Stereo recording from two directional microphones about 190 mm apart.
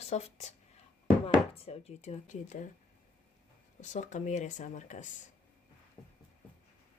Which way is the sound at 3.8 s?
40° left (ahead or behind).